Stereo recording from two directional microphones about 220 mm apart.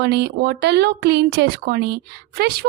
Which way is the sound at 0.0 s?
50° right (ahead or behind).